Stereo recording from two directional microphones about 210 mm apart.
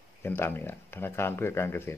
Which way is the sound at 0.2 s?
10° left (ahead or behind).